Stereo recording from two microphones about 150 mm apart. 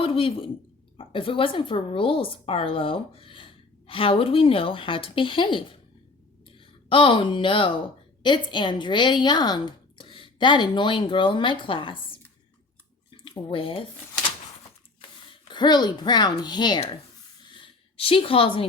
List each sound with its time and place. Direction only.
0.0 s a woman's voice: 40° left (ahead or behind)
6.8 s a woman's voice: 35° left (ahead or behind)
13.1 s drip: 35° left (ahead or behind)
15.4 s speech: 30° left (ahead or behind)
17.4 s a sound: 35° left (ahead or behind)